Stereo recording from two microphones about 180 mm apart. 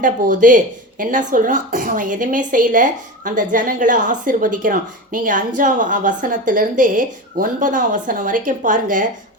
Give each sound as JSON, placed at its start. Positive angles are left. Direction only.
{"t": 0.0, "sound": "speech", "side_deg": -45}